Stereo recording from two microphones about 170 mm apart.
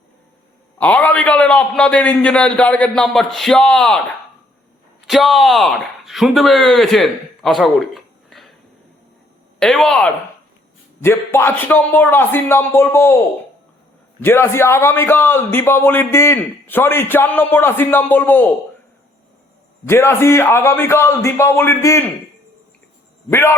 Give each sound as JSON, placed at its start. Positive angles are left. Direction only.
{"t": 0.8, "sound": "a man's voice", "side_deg": 10}
{"t": 5.0, "sound": "speech", "side_deg": 0}
{"t": 9.6, "sound": "speech", "side_deg": 0}
{"t": 11.0, "sound": "a man's voice", "side_deg": 15}
{"t": 14.2, "sound": "a man's voice", "side_deg": 15}
{"t": 19.8, "sound": "a man's voice", "side_deg": 15}
{"t": 23.3, "sound": "a man's voice", "side_deg": 15}